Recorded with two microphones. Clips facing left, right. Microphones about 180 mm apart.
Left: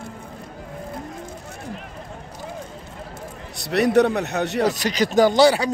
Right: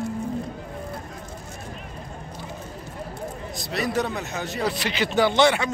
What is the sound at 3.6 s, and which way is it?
A man's voice, 70° left (ahead or behind).